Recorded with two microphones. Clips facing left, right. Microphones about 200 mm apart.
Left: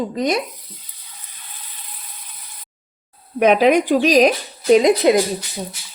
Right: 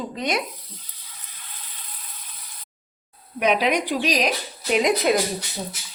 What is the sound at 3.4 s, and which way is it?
Speech, 45° left (ahead or behind).